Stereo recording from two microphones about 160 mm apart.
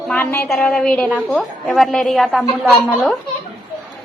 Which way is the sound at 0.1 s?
15° left (ahead or behind).